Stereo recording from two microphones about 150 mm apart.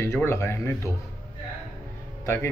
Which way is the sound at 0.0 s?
15° left (ahead or behind).